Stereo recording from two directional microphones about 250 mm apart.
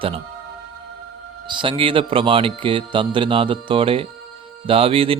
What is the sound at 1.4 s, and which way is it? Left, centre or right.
Mantra, centre.